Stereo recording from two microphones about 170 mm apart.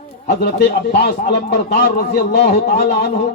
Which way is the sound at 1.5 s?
70° left (ahead or behind).